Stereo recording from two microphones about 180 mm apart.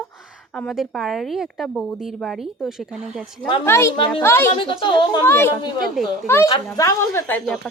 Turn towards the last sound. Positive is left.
turn(degrees=10)  # may be behind; listen again after turning